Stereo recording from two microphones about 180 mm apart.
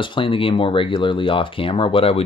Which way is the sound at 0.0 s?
30° left (ahead or behind).